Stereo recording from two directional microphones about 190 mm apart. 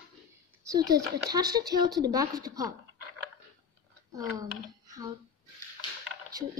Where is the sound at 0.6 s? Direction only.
20° right (ahead or behind).